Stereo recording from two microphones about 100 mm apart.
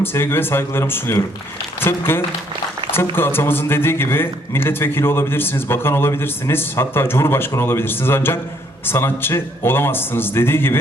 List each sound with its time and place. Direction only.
0.0 s a man's voice: 25° left (ahead or behind)